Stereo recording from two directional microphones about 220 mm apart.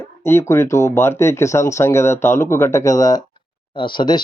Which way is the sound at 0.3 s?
10° left (ahead or behind).